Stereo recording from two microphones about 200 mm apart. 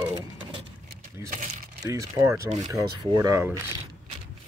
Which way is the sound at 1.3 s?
35° right (ahead or behind).